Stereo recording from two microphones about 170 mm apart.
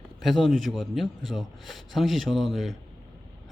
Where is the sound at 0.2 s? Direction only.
Centre (ahead or behind).